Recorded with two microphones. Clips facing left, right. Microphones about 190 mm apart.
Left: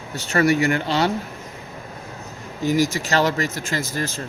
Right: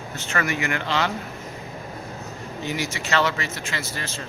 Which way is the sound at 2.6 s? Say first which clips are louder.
Left 8 dB; 40° left (ahead or behind).